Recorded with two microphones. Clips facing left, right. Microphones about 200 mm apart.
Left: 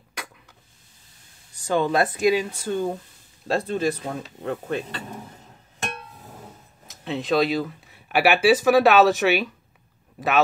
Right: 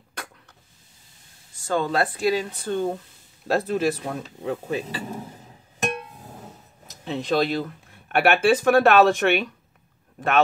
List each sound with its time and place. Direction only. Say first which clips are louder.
1.5 s speech: left 2 dB; 15° left (ahead or behind); by 5.0 s 5° right (ahead or behind)
6.9 s speech: left 1 dB; centre (ahead or behind)